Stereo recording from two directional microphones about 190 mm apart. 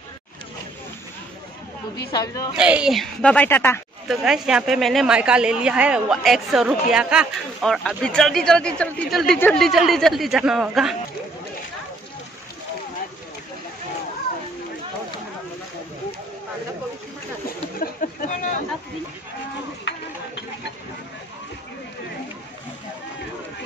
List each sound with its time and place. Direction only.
2.1 s a woman's voice: 20° left (ahead or behind)
2.5 s a woman's voice: 5° right (ahead or behind); by 3.8 s 10° left (ahead or behind)
4.1 s a woman's voice: 5° right (ahead or behind)
17.7 s a sound: 45° left (ahead or behind)